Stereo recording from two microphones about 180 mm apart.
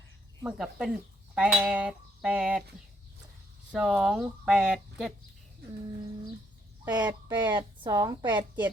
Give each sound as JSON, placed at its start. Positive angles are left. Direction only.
{"t": 0.4, "sound": "speech", "side_deg": -5}
{"t": 3.7, "sound": "speech", "side_deg": -5}
{"t": 6.8, "sound": "speech", "side_deg": -20}